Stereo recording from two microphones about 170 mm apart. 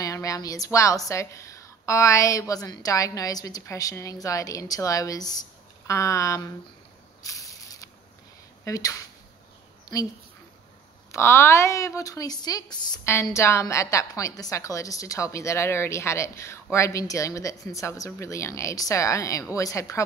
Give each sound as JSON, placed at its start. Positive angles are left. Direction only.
{"t": 0.0, "sound": "speech", "side_deg": 20}
{"t": 7.2, "sound": "a sound", "side_deg": 20}
{"t": 8.6, "sound": "speech", "side_deg": 20}
{"t": 11.1, "sound": "a woman's voice", "side_deg": 15}